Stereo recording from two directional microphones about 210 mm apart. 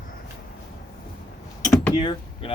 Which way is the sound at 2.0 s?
25° left (ahead or behind).